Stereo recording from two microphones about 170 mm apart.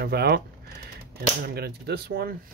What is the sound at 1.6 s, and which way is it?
Speech, 70° right (ahead or behind).